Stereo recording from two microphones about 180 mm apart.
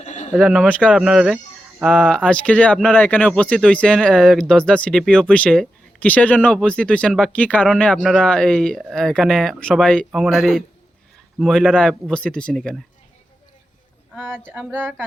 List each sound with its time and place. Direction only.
0.0 s bird: 40° left (ahead or behind)
0.3 s speech: centre (ahead or behind)
14.3 s speech: 5° left (ahead or behind)
14.5 s a sound: 5° right (ahead or behind)